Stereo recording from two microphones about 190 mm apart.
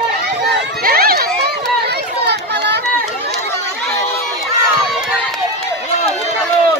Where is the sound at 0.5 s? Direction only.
55° right (ahead or behind).